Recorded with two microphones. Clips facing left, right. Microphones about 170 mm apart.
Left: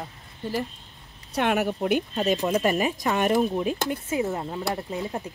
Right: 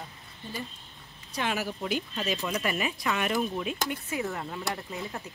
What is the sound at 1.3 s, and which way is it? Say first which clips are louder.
Speech: left 7 dB; 60° left (ahead or behind).